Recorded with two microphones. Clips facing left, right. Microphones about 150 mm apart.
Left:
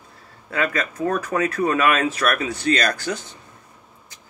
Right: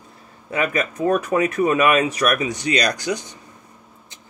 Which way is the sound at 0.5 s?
20° right (ahead or behind).